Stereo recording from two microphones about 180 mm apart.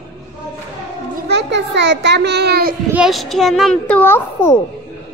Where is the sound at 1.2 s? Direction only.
70° right (ahead or behind).